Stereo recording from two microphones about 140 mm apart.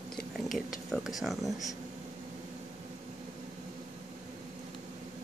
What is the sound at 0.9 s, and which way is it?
Speech, 5° right (ahead or behind).